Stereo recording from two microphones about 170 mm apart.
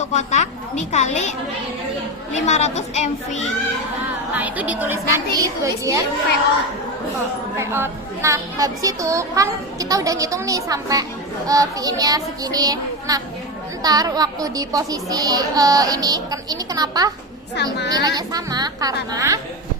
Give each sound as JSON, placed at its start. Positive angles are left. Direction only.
{"t": 0.0, "sound": "a woman's voice", "side_deg": 45}
{"t": 2.3, "sound": "a child's voice", "side_deg": 40}
{"t": 4.4, "sound": "a woman's voice", "side_deg": -10}
{"t": 7.6, "sound": "a child's voice", "side_deg": -15}